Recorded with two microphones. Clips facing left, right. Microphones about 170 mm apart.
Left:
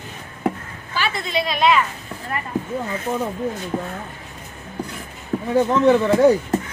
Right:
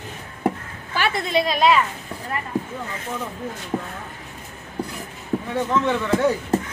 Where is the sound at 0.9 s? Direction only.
60° right (ahead or behind); by 1.7 s 40° right (ahead or behind).